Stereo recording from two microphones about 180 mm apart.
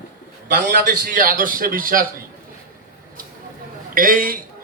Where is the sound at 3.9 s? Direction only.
50° right (ahead or behind).